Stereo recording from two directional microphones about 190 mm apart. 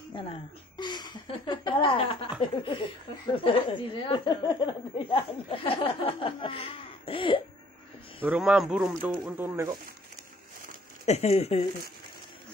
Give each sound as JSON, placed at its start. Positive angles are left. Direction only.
{"t": 0.7, "sound": "speech", "side_deg": 20}
{"t": 8.2, "sound": "speech", "side_deg": -5}
{"t": 11.1, "sound": "speech", "side_deg": 35}